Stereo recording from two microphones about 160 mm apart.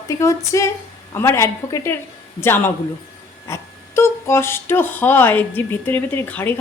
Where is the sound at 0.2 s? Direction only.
20° left (ahead or behind).